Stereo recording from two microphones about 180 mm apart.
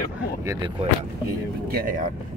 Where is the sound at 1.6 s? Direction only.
55° right (ahead or behind).